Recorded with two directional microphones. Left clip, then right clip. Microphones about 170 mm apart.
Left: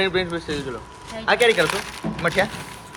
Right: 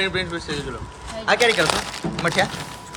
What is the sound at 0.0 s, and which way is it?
A man's voice, centre (ahead or behind).